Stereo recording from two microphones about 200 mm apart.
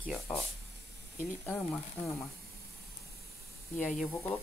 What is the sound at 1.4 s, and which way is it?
Speech, 10° left (ahead or behind).